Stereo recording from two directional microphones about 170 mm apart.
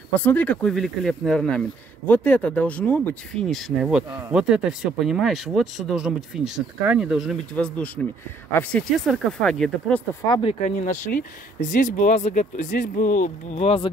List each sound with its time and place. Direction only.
0.1 s speech: 10° left (ahead or behind)
10.2 s speech: 25° left (ahead or behind)
10.6 s speech: 45° left (ahead or behind)